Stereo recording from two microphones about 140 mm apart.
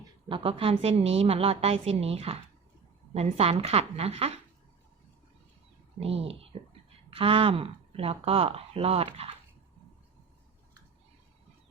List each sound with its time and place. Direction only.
0.3 s speech: 40° right (ahead or behind)
6.0 s speech: 45° right (ahead or behind)